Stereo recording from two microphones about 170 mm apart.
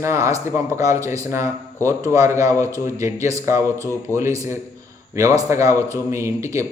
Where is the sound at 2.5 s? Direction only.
15° left (ahead or behind).